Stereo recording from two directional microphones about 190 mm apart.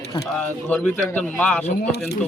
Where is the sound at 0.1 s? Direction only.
15° left (ahead or behind).